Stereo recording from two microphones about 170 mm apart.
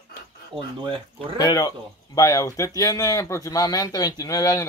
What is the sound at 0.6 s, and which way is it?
Speech, 30° right (ahead or behind).